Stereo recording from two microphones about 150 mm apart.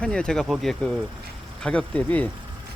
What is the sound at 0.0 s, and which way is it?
Speech, 5° left (ahead or behind).